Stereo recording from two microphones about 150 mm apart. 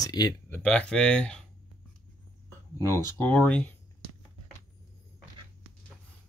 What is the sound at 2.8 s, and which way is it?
Speech, 15° left (ahead or behind).